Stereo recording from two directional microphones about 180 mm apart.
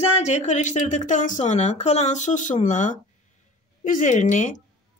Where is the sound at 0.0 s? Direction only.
35° left (ahead or behind).